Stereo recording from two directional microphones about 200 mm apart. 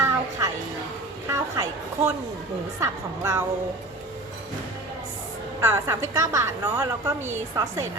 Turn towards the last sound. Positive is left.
turn(degrees=-15)  # may be behind; listen again after turning